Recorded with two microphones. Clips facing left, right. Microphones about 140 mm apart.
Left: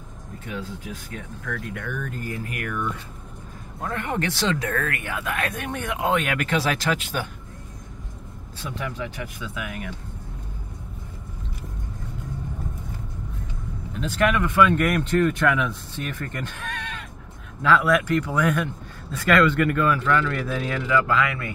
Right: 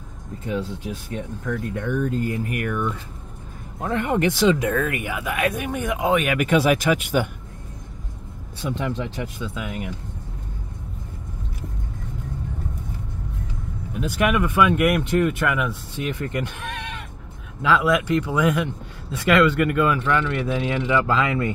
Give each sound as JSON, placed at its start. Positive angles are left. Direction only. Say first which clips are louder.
{"t": 0.5, "sound": "speech", "louder": "right 6 dB", "side_deg": -25}
{"t": 8.5, "sound": "speech", "louder": "right 5 dB", "side_deg": -25}
{"t": 13.9, "sound": "speech", "louder": "right 1 dB", "side_deg": -10}